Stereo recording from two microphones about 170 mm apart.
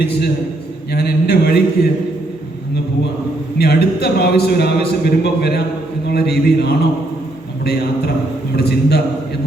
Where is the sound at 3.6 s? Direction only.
70° left (ahead or behind).